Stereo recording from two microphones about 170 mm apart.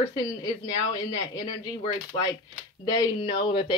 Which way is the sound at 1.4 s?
30° left (ahead or behind).